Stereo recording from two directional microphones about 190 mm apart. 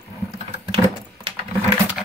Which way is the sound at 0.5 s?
30° right (ahead or behind).